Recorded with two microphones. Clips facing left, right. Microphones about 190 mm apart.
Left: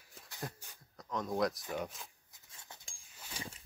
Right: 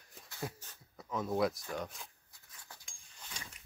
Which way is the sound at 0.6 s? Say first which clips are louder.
Even; 10° left (ahead or behind).